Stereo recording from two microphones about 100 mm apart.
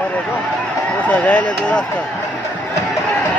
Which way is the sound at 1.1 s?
15° left (ahead or behind).